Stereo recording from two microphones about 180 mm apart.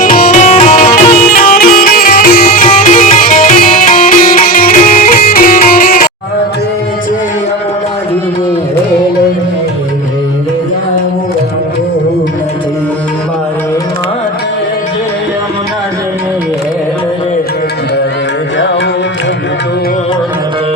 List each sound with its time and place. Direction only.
0.0 s music: 50° left (ahead or behind)